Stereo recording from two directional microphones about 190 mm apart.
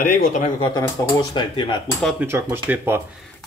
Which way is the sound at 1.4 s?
25° left (ahead or behind).